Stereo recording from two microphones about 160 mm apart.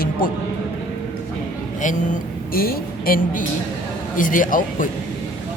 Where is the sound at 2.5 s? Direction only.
65° left (ahead or behind).